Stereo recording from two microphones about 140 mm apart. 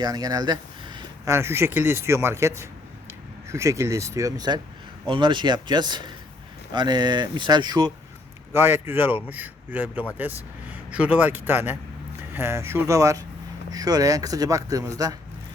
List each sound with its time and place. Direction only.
0.0 s a sound: 25° right (ahead or behind)
1.3 s speech: 20° right (ahead or behind)
8.5 s speech: 15° right (ahead or behind)